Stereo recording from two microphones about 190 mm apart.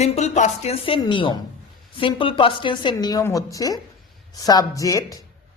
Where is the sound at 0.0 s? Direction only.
35° left (ahead or behind).